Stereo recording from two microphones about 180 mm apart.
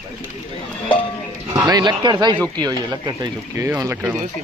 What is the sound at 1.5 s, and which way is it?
Speech, 20° right (ahead or behind).